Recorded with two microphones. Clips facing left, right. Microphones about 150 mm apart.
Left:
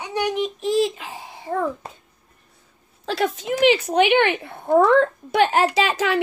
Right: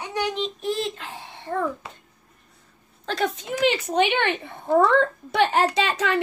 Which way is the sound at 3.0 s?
5° left (ahead or behind).